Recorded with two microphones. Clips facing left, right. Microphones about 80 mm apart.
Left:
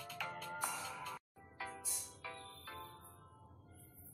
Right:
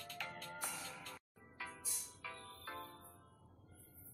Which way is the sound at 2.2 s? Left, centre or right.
Centre.